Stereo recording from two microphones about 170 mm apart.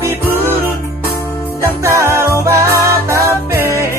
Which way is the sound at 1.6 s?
15° right (ahead or behind).